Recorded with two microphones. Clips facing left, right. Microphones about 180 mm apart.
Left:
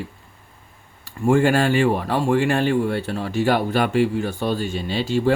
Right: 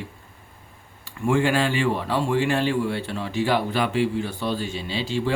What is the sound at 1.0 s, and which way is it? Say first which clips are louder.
Speech: left 4 dB; 45° left (ahead or behind).